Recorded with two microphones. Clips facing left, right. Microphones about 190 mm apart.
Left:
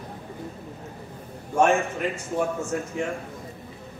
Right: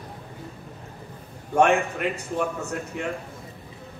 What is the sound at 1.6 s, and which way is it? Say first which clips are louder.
A man's voice: right 1 dB; 65° right (ahead or behind).